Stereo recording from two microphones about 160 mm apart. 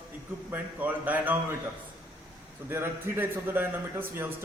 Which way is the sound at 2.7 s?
15° right (ahead or behind).